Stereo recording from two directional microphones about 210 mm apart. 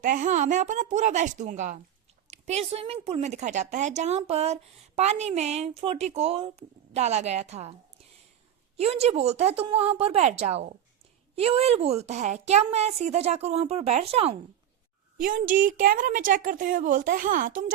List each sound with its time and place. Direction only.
0.0 s a woman's voice: 40° right (ahead or behind)
15.2 s a woman's voice: 40° right (ahead or behind)